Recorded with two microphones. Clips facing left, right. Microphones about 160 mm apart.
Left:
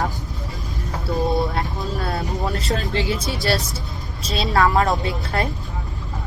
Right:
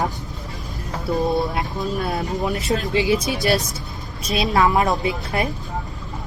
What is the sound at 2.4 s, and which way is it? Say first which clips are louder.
Speech: right 2 dB; 15° right (ahead or behind).